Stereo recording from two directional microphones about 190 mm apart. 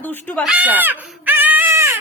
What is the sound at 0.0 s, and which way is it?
Speech, 10° left (ahead or behind).